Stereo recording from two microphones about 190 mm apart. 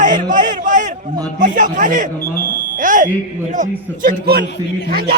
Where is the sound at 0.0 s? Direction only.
40° right (ahead or behind).